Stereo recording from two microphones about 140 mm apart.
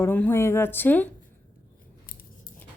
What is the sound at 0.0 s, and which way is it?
Speech, 15° left (ahead or behind).